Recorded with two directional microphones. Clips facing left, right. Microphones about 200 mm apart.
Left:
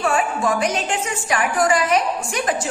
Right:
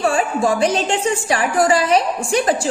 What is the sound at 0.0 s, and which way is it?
A woman's voice, 30° right (ahead or behind).